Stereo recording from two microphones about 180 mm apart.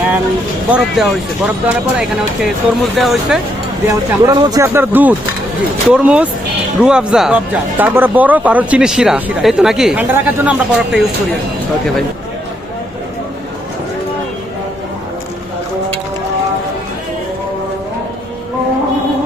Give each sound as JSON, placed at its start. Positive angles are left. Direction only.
{"t": 0.7, "sound": "speech", "side_deg": 0}
{"t": 3.8, "sound": "speech", "side_deg": -15}